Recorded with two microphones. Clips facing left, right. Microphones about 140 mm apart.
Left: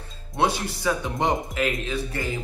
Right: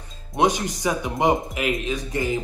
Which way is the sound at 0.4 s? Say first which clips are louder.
Right 3 dB; 15° right (ahead or behind).